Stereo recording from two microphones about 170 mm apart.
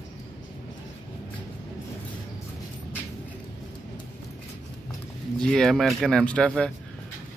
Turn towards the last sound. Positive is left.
turn(degrees=5)  # may be behind; listen again after turning